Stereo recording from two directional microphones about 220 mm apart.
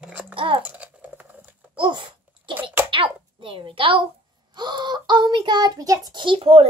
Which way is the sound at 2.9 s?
25° right (ahead or behind).